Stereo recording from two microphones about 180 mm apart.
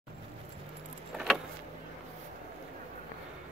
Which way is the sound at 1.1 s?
5° right (ahead or behind).